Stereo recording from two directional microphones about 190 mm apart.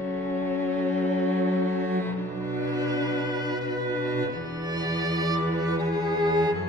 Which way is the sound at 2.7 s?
20° right (ahead or behind).